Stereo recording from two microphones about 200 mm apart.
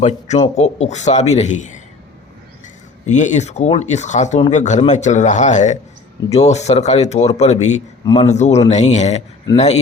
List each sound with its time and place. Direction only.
0.0 s speech: 35° left (ahead or behind)
3.1 s speech: 35° left (ahead or behind)